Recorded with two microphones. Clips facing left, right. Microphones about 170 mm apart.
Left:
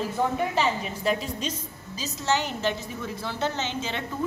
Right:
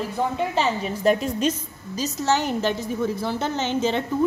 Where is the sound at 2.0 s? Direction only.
45° right (ahead or behind).